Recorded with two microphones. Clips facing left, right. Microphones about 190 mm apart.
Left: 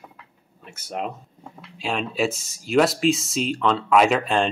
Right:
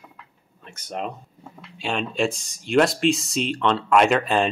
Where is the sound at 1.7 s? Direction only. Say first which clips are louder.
Even; centre (ahead or behind).